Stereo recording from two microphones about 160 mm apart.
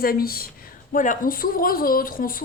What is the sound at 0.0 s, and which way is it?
A woman's voice, 70° left (ahead or behind).